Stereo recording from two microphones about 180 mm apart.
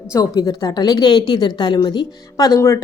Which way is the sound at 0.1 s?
20° left (ahead or behind).